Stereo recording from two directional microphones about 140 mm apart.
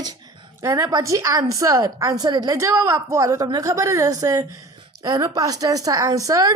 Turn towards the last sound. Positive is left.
turn(degrees=-25)  # may be behind; listen again after turning